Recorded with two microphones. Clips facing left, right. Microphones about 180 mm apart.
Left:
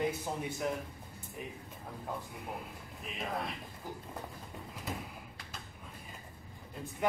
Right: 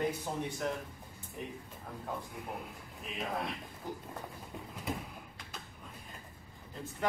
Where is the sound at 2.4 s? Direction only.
Centre (ahead or behind).